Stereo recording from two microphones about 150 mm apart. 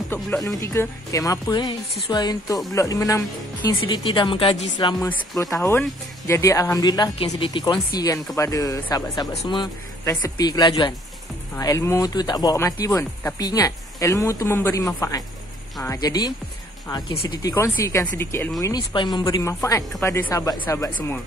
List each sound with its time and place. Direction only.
0.6 s speech: 20° left (ahead or behind)
5.4 s speech: 20° left (ahead or behind)